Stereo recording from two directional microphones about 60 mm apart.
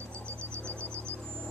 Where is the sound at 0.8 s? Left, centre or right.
Right.